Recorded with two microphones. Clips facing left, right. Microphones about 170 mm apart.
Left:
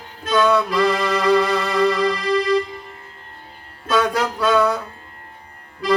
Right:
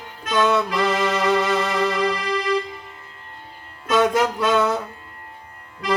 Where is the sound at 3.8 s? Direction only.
20° right (ahead or behind).